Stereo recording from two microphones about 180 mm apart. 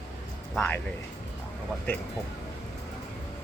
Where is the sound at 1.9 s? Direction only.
10° left (ahead or behind).